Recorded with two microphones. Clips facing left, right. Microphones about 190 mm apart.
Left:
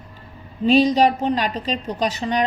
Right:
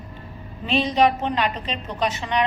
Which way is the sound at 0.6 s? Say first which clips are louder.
Left 4 dB; 40° left (ahead or behind).